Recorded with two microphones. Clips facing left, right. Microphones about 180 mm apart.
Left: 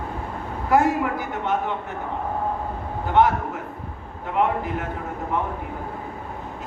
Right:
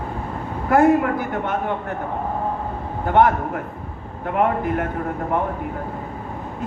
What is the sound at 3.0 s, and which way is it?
A man's voice, 55° right (ahead or behind).